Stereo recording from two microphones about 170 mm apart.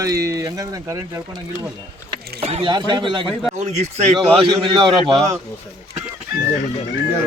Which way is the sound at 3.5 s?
40° right (ahead or behind).